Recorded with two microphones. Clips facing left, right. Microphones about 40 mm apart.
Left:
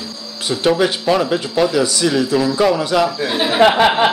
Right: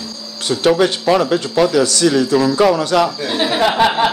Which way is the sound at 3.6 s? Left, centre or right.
Centre.